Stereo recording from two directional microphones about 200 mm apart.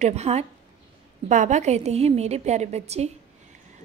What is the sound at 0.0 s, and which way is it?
A woman's voice, 30° right (ahead or behind).